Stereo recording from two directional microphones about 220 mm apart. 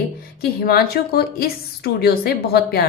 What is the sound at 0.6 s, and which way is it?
A woman's voice, 45° left (ahead or behind).